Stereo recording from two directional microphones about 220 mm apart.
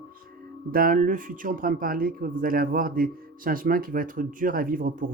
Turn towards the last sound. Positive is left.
turn(degrees=-40)  # may be behind; listen again after turning